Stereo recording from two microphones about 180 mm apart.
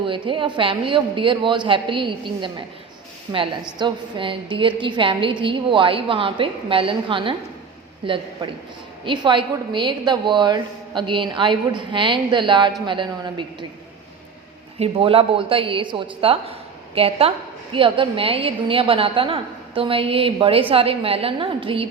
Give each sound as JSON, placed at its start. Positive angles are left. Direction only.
{"t": 0.0, "sound": "a woman's voice", "side_deg": -30}
{"t": 3.8, "sound": "a woman's voice", "side_deg": -25}
{"t": 14.8, "sound": "a woman's voice", "side_deg": -30}